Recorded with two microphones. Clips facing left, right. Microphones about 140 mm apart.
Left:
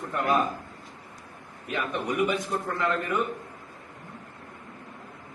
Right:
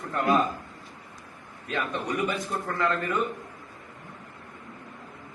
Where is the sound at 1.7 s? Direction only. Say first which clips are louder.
Left 1 dB; 15° left (ahead or behind).